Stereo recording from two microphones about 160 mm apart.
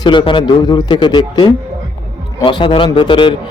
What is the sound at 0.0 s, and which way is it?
A man's voice, 30° left (ahead or behind).